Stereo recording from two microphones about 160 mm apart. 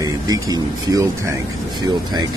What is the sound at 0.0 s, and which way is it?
Speech, 20° right (ahead or behind).